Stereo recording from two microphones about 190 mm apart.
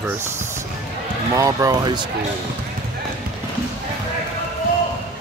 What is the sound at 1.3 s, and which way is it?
Speech, 20° right (ahead or behind).